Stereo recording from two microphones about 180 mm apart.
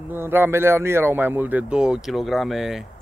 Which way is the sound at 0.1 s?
10° right (ahead or behind).